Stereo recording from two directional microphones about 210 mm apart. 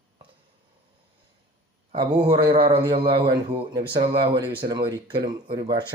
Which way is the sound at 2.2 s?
20° right (ahead or behind).